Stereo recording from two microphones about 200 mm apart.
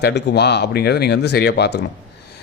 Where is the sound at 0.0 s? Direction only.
55° left (ahead or behind).